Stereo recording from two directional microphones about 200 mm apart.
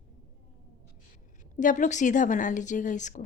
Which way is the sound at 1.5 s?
40° left (ahead or behind).